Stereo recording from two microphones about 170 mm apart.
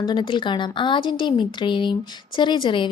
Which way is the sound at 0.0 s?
25° left (ahead or behind).